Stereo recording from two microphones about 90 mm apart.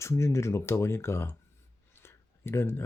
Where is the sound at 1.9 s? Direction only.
30° left (ahead or behind).